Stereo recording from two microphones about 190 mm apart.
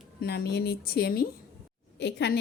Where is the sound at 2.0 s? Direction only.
65° left (ahead or behind).